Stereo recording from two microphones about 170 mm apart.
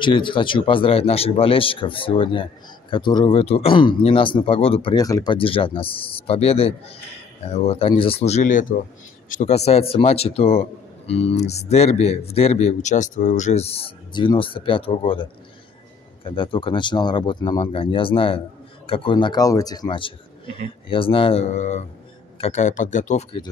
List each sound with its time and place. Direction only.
0.0 s speech: 30° left (ahead or behind)
4.9 s speech: 20° left (ahead or behind)
16.3 s speech: 30° left (ahead or behind); by 23.2 s 45° left (ahead or behind)